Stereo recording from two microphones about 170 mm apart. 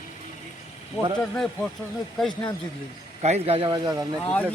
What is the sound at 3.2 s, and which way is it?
Speech, 40° right (ahead or behind).